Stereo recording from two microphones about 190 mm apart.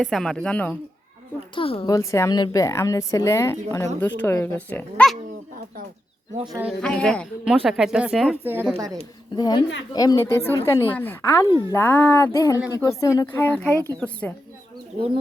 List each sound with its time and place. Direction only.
0.0 s speech: 5° left (ahead or behind)
1.5 s a woman's voice: 30° left (ahead or behind)
1.9 s speech: 15° left (ahead or behind)
6.6 s speech: centre (ahead or behind)
8.7 s a woman's voice: 20° right (ahead or behind)
9.0 s a woman's voice: 25° left (ahead or behind)
14.9 s speech: 25° right (ahead or behind)